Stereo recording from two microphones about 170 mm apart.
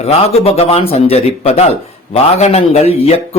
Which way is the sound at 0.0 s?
40° left (ahead or behind).